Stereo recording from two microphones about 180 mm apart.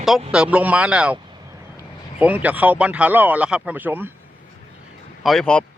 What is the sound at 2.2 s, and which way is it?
Speech, 10° right (ahead or behind).